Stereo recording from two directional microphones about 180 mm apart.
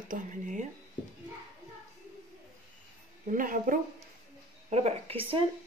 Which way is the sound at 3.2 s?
45° right (ahead or behind).